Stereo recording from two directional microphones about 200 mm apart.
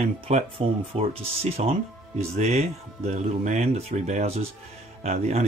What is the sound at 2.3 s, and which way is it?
Speech, 30° right (ahead or behind).